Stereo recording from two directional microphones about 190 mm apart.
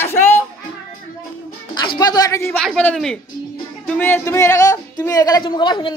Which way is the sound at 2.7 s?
5° left (ahead or behind).